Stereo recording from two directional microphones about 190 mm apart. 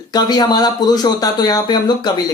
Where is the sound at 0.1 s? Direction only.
20° left (ahead or behind).